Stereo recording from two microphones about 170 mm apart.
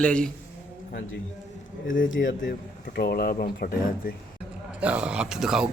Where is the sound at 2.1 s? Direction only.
90° left; by 4.1 s 60° left (ahead or behind).